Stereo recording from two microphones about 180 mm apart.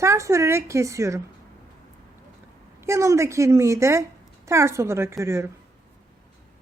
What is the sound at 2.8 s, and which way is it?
Speech, 15° right (ahead or behind).